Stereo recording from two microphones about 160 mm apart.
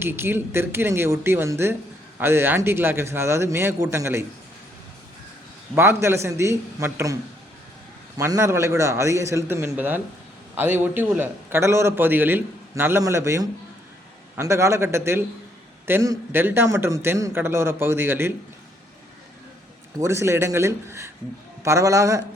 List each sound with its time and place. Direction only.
0.0 s a man's voice: 15° right (ahead or behind)
5.7 s a man's voice: 15° right (ahead or behind)
8.2 s a man's voice: 15° right (ahead or behind)
20.0 s a man's voice: 15° right (ahead or behind)